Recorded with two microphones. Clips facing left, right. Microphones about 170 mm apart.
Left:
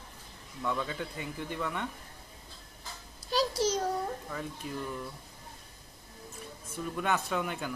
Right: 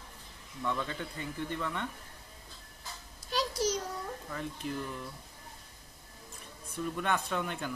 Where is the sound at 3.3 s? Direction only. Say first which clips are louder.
Left 3 dB; 30° left (ahead or behind).